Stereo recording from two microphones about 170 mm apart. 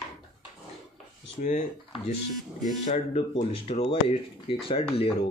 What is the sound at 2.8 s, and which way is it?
Speech, 40° left (ahead or behind).